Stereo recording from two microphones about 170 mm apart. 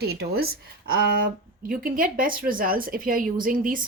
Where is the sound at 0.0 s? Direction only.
70° right (ahead or behind).